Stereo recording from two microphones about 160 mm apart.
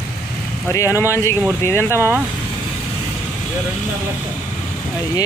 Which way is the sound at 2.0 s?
15° right (ahead or behind).